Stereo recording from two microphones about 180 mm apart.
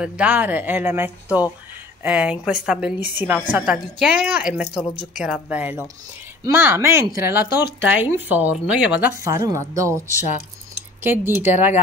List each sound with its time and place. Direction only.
0.0 s a woman's voice: 10° right (ahead or behind)
7.4 s speech: 60° left (ahead or behind)
7.8 s speech: 10° right (ahead or behind)